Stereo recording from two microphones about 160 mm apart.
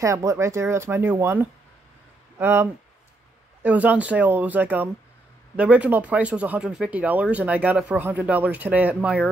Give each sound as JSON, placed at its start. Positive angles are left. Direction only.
{"t": 0.0, "sound": "speech", "side_deg": -20}